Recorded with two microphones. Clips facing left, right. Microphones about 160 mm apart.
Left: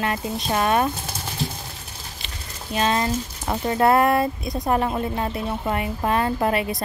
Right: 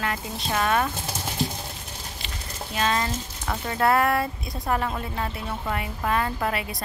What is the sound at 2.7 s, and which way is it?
Speech, 25° left (ahead or behind).